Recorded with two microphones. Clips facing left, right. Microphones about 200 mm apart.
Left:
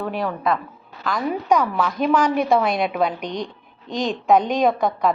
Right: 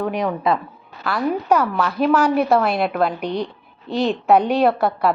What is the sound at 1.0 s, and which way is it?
A woman's voice, 5° right (ahead or behind).